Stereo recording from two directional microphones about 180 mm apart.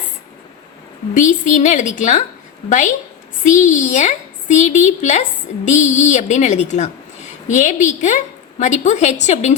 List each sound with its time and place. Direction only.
1.1 s a woman's voice: 45° left (ahead or behind)